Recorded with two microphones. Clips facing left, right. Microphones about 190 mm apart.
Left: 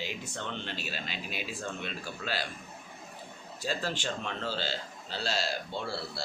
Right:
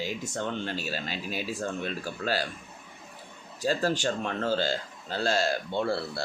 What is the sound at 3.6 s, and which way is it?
A man's voice, 45° right (ahead or behind).